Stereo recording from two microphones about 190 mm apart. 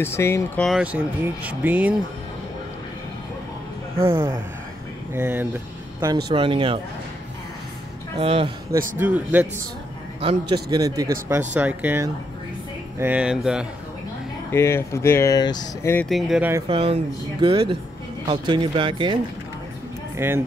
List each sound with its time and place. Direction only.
0.0 s speech: 15° left (ahead or behind)
0.7 s speech: 5° right (ahead or behind)
5.1 s speech: 10° right (ahead or behind)
6.2 s speech: 25° right (ahead or behind)
8.2 s speech: 30° right (ahead or behind)
8.9 s speech: 10° right (ahead or behind)
10.2 s speech: 25° right (ahead or behind); by 13.7 s 5° right (ahead or behind)
14.5 s speech: 15° left (ahead or behind)
16.1 s speech: centre (ahead or behind)
16.6 s speech: 30° right (ahead or behind)
20.2 s speech: 15° right (ahead or behind)